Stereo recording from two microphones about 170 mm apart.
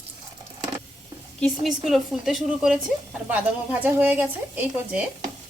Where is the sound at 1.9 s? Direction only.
Centre (ahead or behind).